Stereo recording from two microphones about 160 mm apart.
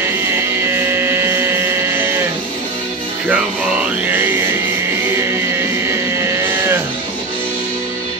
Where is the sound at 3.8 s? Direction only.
10° right (ahead or behind).